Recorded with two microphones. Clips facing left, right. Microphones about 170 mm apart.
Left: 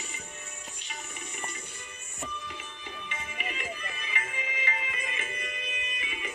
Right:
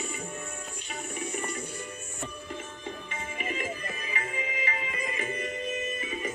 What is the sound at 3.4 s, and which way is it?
Tabla, 40° right (ahead or behind).